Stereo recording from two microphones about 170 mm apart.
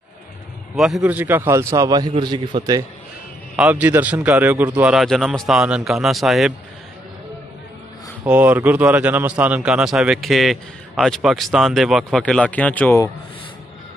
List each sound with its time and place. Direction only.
0.7 s a man's voice: 5° right (ahead or behind); by 2.8 s 25° right (ahead or behind)
3.5 s a man's voice: 5° right (ahead or behind)
8.3 s a man's voice: 10° right (ahead or behind); by 13.0 s 10° left (ahead or behind)